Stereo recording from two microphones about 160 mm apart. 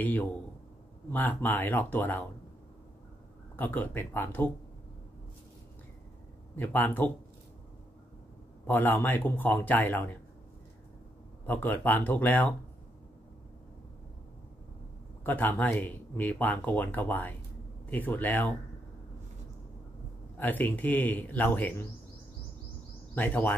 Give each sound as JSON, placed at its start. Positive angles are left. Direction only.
{"t": 0.0, "sound": "speech", "side_deg": 10}
{"t": 3.5, "sound": "speech", "side_deg": 10}
{"t": 6.5, "sound": "speech", "side_deg": 10}
{"t": 8.6, "sound": "speech", "side_deg": 10}
{"t": 11.4, "sound": "speech", "side_deg": 10}
{"t": 15.2, "sound": "speech", "side_deg": 10}
{"t": 20.3, "sound": "speech", "side_deg": 10}
{"t": 23.1, "sound": "speech", "side_deg": 10}